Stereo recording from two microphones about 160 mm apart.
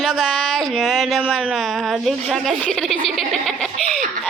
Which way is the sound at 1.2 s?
5° left (ahead or behind).